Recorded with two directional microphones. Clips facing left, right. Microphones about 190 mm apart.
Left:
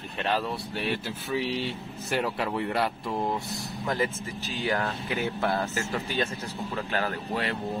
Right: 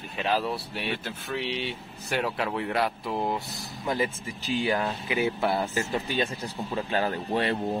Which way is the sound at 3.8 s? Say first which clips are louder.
Right 1 dB; 15° right (ahead or behind).